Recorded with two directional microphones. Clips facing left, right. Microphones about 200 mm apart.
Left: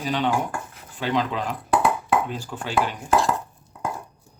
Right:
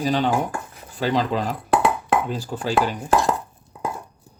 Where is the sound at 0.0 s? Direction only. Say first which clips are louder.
Right 3 dB; 40° right (ahead or behind).